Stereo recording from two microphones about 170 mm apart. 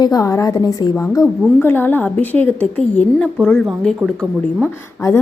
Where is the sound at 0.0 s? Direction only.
20° left (ahead or behind).